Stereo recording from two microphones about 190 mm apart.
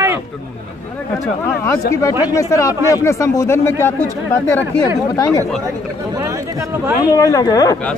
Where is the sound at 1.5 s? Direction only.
15° left (ahead or behind).